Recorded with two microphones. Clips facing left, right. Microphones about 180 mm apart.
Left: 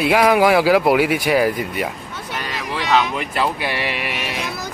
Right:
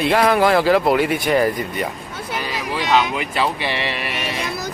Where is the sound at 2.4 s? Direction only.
5° right (ahead or behind).